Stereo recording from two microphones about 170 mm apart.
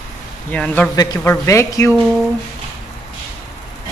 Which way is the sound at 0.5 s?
10° left (ahead or behind).